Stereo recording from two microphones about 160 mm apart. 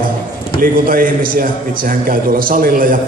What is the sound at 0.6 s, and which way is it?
A man's voice, 65° right (ahead or behind).